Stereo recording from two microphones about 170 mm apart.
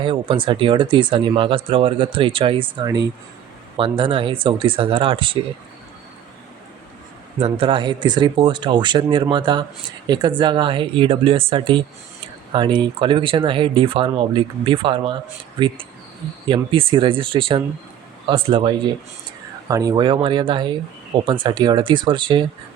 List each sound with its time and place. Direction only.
0.0 s speech: 30° right (ahead or behind)
3.8 s speech: 30° right (ahead or behind)
7.3 s speech: 35° right (ahead or behind)